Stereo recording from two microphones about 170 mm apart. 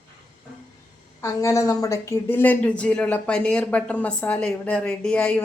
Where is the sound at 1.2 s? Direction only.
20° left (ahead or behind).